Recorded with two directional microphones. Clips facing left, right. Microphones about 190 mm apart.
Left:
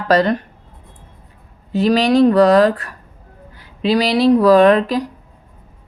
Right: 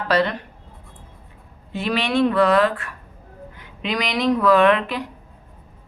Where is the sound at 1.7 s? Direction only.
40° left (ahead or behind).